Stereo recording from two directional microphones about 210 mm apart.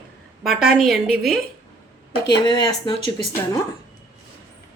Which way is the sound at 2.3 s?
20° left (ahead or behind).